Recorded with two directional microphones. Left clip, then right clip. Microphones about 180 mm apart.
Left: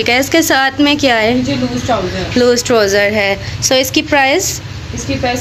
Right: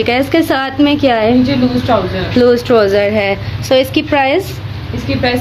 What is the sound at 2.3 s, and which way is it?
Speech, centre (ahead or behind).